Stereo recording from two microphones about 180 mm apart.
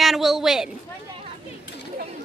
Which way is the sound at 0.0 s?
Centre (ahead or behind).